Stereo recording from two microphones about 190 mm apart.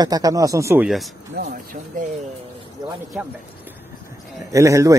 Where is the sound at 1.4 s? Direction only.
55° right (ahead or behind).